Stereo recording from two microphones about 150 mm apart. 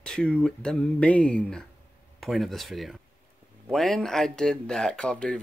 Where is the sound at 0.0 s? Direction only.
5° left (ahead or behind).